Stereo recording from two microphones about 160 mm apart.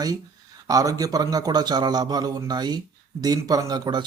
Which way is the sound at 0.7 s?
20° right (ahead or behind).